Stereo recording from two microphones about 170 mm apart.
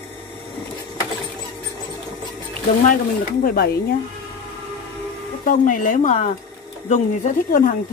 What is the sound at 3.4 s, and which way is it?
Speech, 65° left (ahead or behind).